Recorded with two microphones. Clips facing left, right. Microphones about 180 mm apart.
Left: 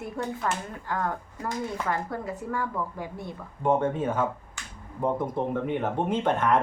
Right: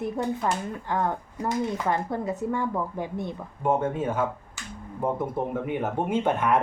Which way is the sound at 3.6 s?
10° right (ahead or behind).